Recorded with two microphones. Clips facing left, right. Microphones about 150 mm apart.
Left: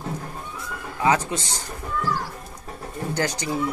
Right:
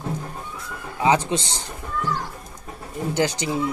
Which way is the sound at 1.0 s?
25° right (ahead or behind).